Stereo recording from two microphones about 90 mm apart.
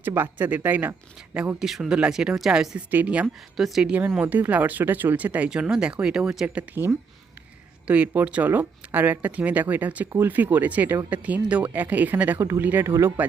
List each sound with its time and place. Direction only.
0.0 s speech: 25° right (ahead or behind)
1.5 s speech: 5° right (ahead or behind)
3.6 s speech: 5° right (ahead or behind)
4.2 s speech: 20° right (ahead or behind)
7.9 s speech: 15° right (ahead or behind)
12.4 s speech: 30° right (ahead or behind)
12.6 s speech: 20° right (ahead or behind)